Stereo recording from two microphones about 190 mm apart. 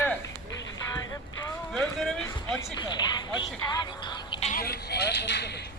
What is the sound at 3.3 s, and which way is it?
Music, 25° left (ahead or behind).